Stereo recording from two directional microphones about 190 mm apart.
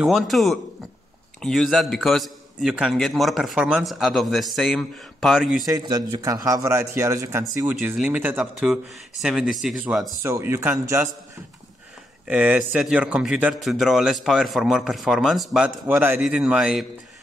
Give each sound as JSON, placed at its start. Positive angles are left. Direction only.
{"t": 0.0, "sound": "speech", "side_deg": 0}
{"t": 5.7, "sound": "a man's voice", "side_deg": -20}
{"t": 7.6, "sound": "a man's voice", "side_deg": -5}
{"t": 12.3, "sound": "speech", "side_deg": -10}